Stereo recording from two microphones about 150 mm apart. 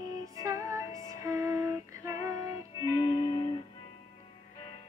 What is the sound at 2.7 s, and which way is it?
Music, 25° left (ahead or behind).